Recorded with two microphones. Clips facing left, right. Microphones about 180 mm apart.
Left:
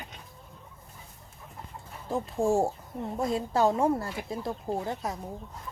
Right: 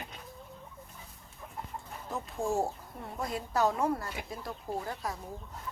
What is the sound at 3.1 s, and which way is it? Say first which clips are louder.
Speech: left 5 dB; 25° left (ahead or behind).